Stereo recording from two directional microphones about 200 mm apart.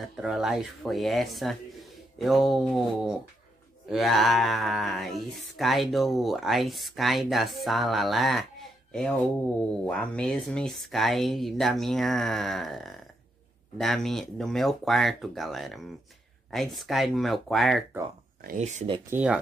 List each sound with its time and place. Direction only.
0.1 s speech: centre (ahead or behind)
9.6 s speech: 5° left (ahead or behind)
18.4 s speech: 40° right (ahead or behind)
19.0 s speech: 10° right (ahead or behind)